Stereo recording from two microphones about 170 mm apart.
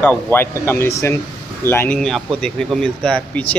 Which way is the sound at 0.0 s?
10° left (ahead or behind).